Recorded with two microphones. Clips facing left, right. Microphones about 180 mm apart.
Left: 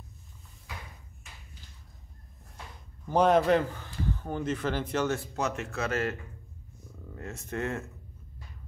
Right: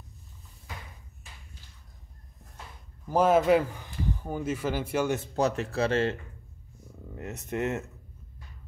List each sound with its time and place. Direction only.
3.1 s a man's voice: 5° right (ahead or behind)
5.2 s speech: 35° right (ahead or behind)
7.2 s speech: 20° right (ahead or behind)